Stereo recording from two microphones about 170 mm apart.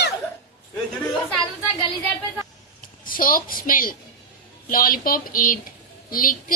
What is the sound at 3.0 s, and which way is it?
A woman's voice, 55° left (ahead or behind).